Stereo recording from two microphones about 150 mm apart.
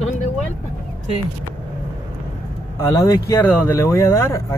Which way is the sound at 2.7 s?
25° left (ahead or behind).